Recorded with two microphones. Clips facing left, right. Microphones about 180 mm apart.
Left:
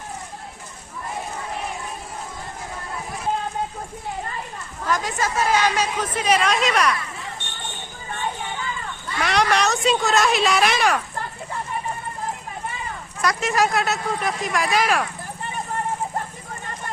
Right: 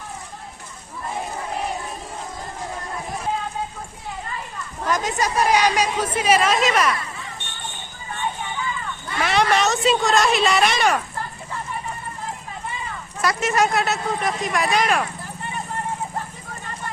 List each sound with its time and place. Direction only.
4.9 s a woman's voice: 20° right (ahead or behind); by 6.9 s centre (ahead or behind)
9.2 s a woman's voice: centre (ahead or behind)
13.2 s a woman's voice: centre (ahead or behind)